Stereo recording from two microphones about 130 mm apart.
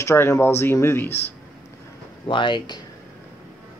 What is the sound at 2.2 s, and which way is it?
Speech, 40° left (ahead or behind).